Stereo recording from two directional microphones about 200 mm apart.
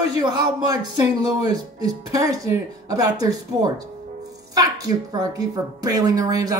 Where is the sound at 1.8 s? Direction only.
15° right (ahead or behind).